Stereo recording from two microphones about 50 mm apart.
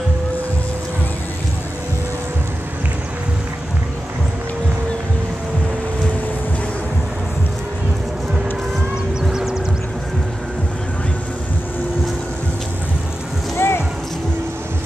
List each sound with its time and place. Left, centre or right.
9.2 s vehicle: centre
13.6 s music: left